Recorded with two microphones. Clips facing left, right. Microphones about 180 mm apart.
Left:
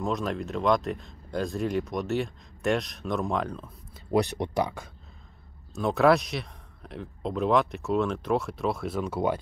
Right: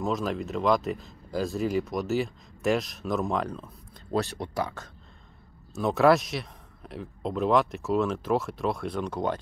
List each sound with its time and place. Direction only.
0.0 s speech: centre (ahead or behind)
4.1 s speech: 15° left (ahead or behind)
5.8 s speech: centre (ahead or behind)